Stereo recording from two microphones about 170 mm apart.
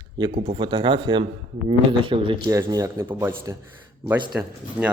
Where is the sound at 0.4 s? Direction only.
30° right (ahead or behind).